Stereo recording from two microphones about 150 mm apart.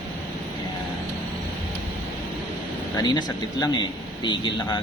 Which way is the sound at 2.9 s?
25° left (ahead or behind).